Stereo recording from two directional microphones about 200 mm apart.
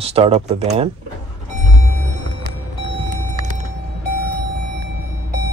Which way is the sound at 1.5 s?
35° right (ahead or behind).